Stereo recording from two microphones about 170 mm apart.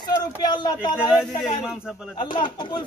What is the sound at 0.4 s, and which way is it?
Speech, 25° left (ahead or behind).